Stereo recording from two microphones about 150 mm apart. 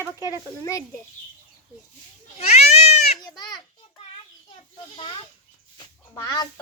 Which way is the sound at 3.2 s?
25° left (ahead or behind).